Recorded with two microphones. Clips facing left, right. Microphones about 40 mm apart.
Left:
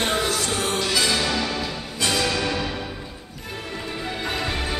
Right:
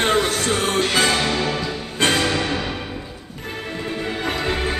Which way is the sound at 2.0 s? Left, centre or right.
Right.